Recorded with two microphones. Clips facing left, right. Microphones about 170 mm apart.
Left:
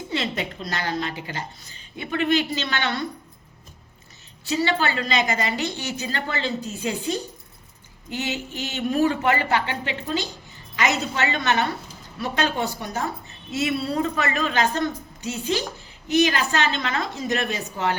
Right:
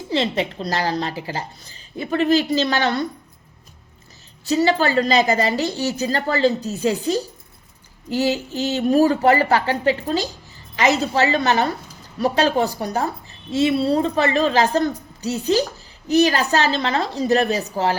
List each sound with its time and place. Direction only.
0.1 s a woman's voice: 30° right (ahead or behind)
4.4 s a woman's voice: 40° right (ahead or behind)